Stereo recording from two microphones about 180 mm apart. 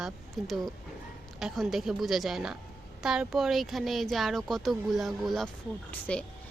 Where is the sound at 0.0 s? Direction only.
Centre (ahead or behind).